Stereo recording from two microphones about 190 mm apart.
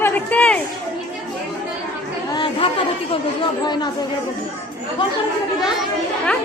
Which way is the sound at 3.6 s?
20° left (ahead or behind).